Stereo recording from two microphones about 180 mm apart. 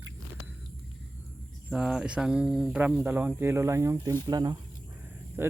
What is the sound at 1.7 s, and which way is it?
Speech, 5° right (ahead or behind).